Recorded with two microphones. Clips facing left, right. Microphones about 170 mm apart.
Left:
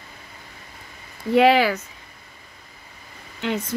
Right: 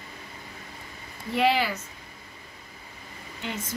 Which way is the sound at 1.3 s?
90° left.